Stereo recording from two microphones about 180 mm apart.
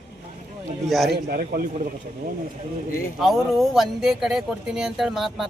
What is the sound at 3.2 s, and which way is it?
Speech, centre (ahead or behind).